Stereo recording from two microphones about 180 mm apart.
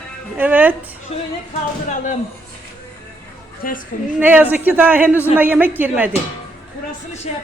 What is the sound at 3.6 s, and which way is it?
Speech, 50° left (ahead or behind).